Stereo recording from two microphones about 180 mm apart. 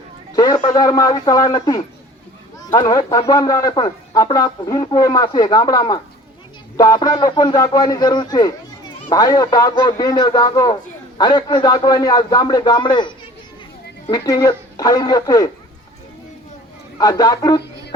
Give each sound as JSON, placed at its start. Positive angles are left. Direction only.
{"t": 0.3, "sound": "speech", "side_deg": 20}
{"t": 14.1, "sound": "speech", "side_deg": 20}
{"t": 17.0, "sound": "speech", "side_deg": 20}